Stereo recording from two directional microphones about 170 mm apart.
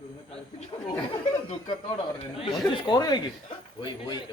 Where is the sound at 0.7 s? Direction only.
30° left (ahead or behind).